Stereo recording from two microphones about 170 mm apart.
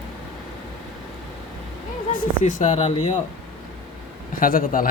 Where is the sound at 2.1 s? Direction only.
50° left (ahead or behind); by 3.1 s 35° left (ahead or behind).